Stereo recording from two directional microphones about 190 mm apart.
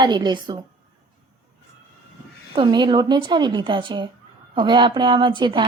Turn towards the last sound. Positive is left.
turn(degrees=-25)  # may be behind; listen again after turning